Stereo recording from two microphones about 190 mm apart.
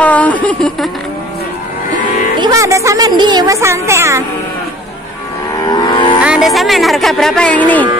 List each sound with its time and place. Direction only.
0.0 s a sound: 10° left (ahead or behind)
2.3 s a woman's voice: 20° right (ahead or behind)
5.7 s livestock: 25° left (ahead or behind)
6.2 s speech: centre (ahead or behind)